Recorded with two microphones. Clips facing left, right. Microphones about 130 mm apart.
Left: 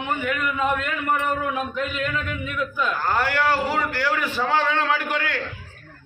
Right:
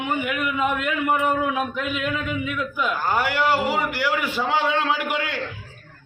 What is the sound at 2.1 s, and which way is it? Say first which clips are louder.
A man's voice: right 2 dB; 15° right (ahead or behind).